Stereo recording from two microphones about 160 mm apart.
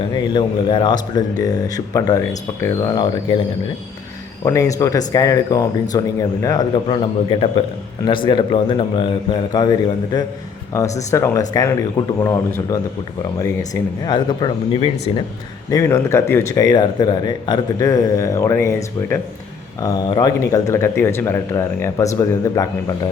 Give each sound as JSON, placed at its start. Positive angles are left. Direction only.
{"t": 0.1, "sound": "speech", "side_deg": 30}
{"t": 4.4, "sound": "a man's voice", "side_deg": 20}
{"t": 15.7, "sound": "speech", "side_deg": 20}
{"t": 19.8, "sound": "speech", "side_deg": 25}